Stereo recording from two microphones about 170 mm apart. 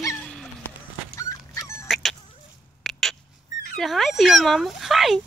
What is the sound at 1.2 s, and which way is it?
Dog, 20° left (ahead or behind).